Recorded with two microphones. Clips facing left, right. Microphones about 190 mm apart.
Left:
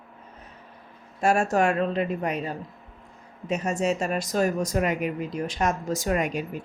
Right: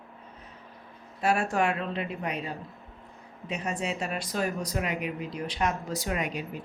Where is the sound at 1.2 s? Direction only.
45° left (ahead or behind).